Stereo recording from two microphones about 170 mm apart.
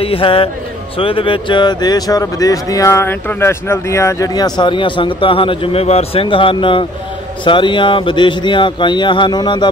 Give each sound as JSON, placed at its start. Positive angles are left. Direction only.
{"t": 0.0, "sound": "speech", "side_deg": 30}